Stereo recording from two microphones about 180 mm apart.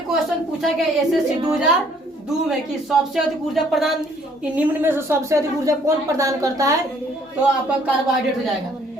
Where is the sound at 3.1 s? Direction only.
Centre (ahead or behind); by 6.8 s 20° right (ahead or behind).